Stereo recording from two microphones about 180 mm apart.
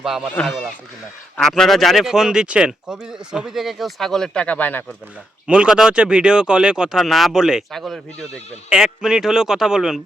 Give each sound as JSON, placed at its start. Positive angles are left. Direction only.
{"t": 0.0, "sound": "speech", "side_deg": 0}
{"t": 5.5, "sound": "speech", "side_deg": -5}